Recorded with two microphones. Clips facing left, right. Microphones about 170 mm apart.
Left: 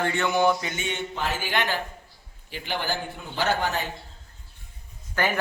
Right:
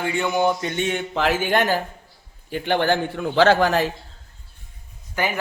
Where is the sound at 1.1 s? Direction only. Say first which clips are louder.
Right 8 dB; 90° right.